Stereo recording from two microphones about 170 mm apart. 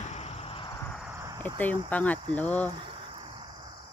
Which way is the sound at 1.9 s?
10° left (ahead or behind).